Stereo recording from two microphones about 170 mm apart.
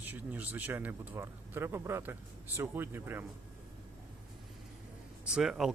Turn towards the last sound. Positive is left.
turn(degrees=0)  # may be behind; listen again after turning